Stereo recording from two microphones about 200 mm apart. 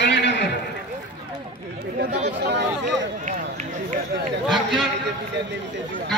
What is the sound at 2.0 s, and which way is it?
Speech, 40° right (ahead or behind).